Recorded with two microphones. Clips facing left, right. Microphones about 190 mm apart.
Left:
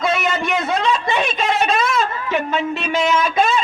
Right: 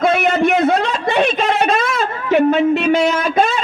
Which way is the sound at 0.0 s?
60° right (ahead or behind).